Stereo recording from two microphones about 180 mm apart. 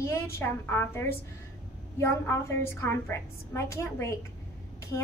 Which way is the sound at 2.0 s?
15° left (ahead or behind).